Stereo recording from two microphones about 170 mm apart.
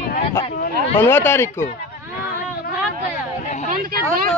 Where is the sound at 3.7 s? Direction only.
60° right (ahead or behind).